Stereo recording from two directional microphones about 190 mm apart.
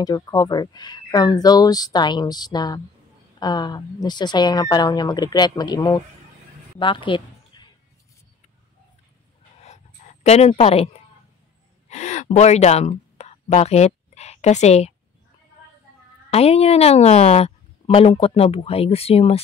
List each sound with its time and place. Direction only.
0.0 s speech: 20° left (ahead or behind)
9.6 s a sound: 35° left (ahead or behind)
11.9 s gasp: 40° left (ahead or behind)
16.3 s a woman's voice: 30° left (ahead or behind)